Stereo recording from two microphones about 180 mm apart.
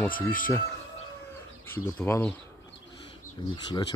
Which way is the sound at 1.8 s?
10° left (ahead or behind).